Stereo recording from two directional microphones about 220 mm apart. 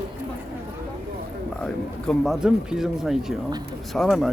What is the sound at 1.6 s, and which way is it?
Speech, centre (ahead or behind).